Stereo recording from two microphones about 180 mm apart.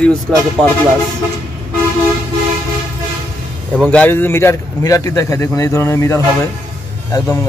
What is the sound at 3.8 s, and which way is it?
A man's voice, 5° left (ahead or behind).